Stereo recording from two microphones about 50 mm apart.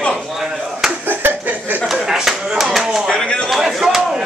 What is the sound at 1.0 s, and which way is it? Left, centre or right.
Clapping, right.